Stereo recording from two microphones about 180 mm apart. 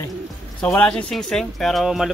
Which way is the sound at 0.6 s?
5° left (ahead or behind).